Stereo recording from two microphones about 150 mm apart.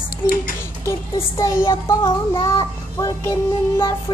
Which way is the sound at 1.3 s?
20° left (ahead or behind).